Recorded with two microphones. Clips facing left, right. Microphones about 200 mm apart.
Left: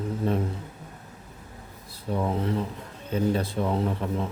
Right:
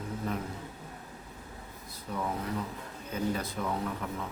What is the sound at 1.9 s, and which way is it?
Speech, 30° left (ahead or behind).